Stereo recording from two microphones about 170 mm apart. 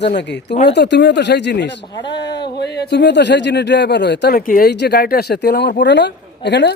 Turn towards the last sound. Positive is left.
turn(degrees=90)